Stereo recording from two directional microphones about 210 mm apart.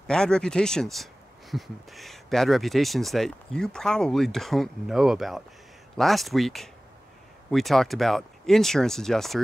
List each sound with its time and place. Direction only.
0.0 s speech: 5° left (ahead or behind)